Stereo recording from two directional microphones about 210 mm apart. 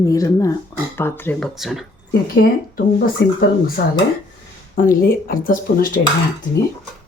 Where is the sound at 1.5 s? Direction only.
Centre (ahead or behind).